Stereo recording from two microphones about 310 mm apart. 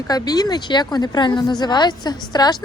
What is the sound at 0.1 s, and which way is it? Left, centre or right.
Speech, centre.